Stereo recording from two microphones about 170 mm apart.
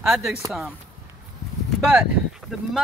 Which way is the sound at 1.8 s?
5° right (ahead or behind).